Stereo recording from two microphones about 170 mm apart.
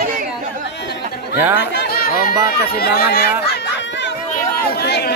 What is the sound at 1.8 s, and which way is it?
Music, 60° left (ahead or behind).